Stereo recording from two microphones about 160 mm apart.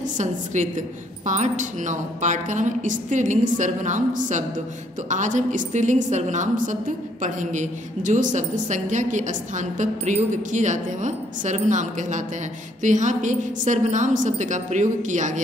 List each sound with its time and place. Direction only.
1.2 s a woman's voice: 50° right (ahead or behind)